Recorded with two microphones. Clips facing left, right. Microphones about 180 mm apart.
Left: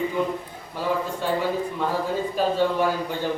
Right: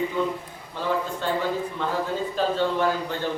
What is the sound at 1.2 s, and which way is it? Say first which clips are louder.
Speech: left 3 dB; 10° left (ahead or behind).